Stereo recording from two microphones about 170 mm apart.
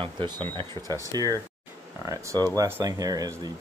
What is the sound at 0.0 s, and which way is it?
Speech, 30° right (ahead or behind).